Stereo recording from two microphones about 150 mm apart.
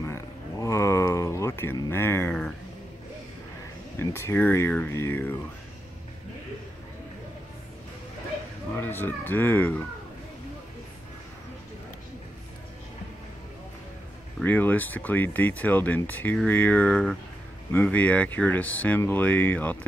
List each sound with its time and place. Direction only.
0.0 s a sound: 20° left (ahead or behind)
4.0 s speech: 15° left (ahead or behind)
8.7 s speech: 15° left (ahead or behind)
14.4 s speech: 10° left (ahead or behind)